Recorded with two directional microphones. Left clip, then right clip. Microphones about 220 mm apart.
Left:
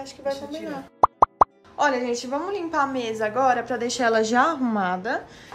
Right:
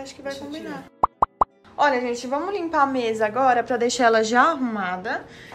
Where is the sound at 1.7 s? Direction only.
15° left (ahead or behind).